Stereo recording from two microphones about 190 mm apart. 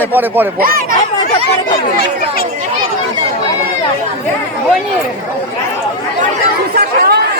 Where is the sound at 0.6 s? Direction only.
50° right (ahead or behind).